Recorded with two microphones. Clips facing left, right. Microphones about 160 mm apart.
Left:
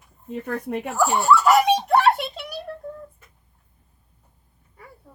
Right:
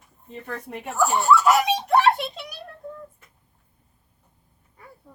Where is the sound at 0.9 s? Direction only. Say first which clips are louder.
Even; centre (ahead or behind).